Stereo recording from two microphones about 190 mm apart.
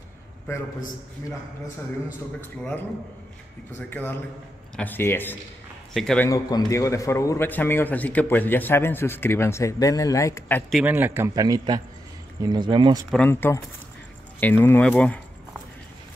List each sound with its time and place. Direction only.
2.4 s a man's voice: 10° left (ahead or behind)
3.9 s a man's voice: 10° left (ahead or behind)
6.2 s a man's voice: 15° left (ahead or behind)
10.7 s a man's voice: 5° right (ahead or behind); by 13.0 s 25° right (ahead or behind)
13.1 s a man's voice: 10° left (ahead or behind)